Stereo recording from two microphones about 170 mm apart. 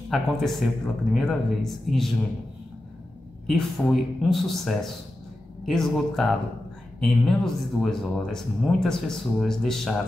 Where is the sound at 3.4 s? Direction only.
Centre (ahead or behind).